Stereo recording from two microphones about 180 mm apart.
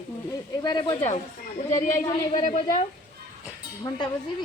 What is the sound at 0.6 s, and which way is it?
Speech, 25° left (ahead or behind).